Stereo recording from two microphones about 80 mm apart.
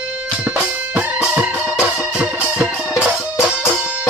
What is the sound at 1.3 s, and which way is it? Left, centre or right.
Music, centre.